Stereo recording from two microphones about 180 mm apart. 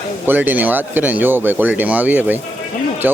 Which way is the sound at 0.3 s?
10° right (ahead or behind).